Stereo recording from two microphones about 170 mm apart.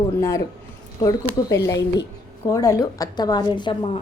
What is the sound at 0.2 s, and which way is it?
A woman's voice, 15° left (ahead or behind).